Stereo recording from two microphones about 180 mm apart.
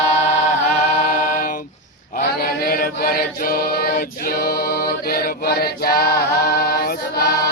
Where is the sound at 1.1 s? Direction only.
50° left (ahead or behind).